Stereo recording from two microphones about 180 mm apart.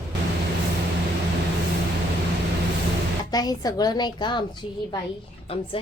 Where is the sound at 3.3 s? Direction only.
20° left (ahead or behind).